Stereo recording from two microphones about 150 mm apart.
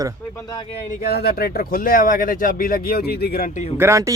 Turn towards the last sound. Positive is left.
turn(degrees=-20)  # may be behind; listen again after turning